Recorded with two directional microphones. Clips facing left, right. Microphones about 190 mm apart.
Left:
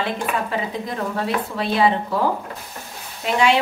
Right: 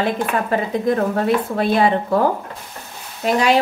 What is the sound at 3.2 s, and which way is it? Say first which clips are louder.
Speech: right 2 dB; 40° right (ahead or behind).